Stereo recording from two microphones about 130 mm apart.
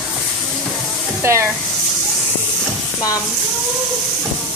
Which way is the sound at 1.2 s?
20° right (ahead or behind).